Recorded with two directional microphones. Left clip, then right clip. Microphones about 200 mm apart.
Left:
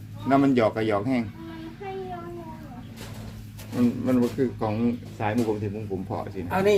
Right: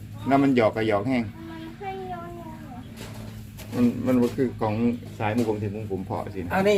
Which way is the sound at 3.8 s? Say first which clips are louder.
Right 1 dB; 10° right (ahead or behind).